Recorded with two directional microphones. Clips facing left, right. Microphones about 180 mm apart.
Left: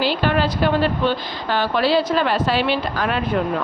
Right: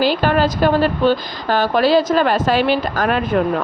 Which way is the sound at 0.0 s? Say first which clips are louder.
Right 4 dB; 45° right (ahead or behind).